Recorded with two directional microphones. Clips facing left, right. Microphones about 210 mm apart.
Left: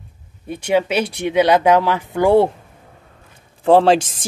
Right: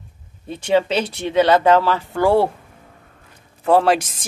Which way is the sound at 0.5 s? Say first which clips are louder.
Even; 10° left (ahead or behind).